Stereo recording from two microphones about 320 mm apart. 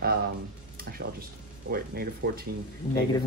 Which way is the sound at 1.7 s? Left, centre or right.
Right.